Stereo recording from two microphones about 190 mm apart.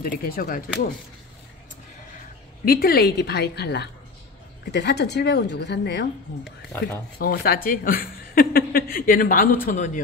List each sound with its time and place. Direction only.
0.0 s a woman's voice: 50° left (ahead or behind)
2.6 s a woman's voice: 55° left (ahead or behind)